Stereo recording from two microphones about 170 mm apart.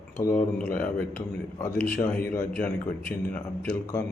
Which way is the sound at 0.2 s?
15° left (ahead or behind).